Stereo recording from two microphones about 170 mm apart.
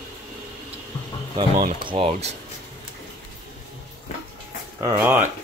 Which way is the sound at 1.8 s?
30° right (ahead or behind).